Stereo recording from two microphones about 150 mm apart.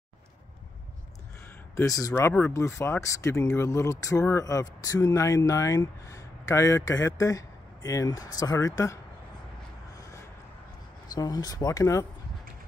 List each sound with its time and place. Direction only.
1.8 s speech: 20° left (ahead or behind)
11.1 s speech: 25° left (ahead or behind)